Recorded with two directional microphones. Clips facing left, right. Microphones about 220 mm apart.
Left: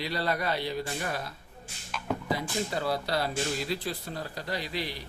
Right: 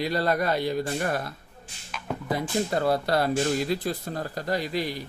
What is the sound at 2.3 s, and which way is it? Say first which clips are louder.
Speech: right 9 dB; 50° right (ahead or behind).